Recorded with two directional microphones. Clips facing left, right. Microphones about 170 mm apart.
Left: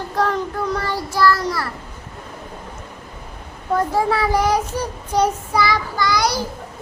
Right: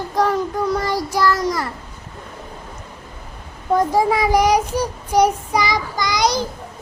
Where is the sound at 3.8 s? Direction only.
15° right (ahead or behind).